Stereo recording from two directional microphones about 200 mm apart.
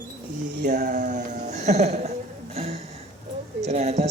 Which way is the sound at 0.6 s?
40° right (ahead or behind).